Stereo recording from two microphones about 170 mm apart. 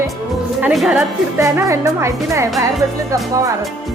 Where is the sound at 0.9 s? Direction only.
15° right (ahead or behind).